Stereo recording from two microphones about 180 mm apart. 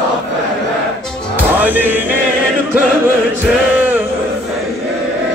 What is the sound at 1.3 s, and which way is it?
Music, 10° right (ahead or behind).